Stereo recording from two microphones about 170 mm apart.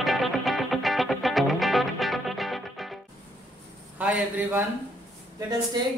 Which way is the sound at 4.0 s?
10° right (ahead or behind).